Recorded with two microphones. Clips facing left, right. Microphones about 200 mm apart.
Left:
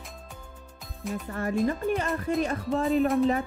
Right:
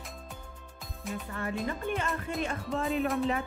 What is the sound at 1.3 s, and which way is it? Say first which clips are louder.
Music: left 6 dB; 40° left (ahead or behind).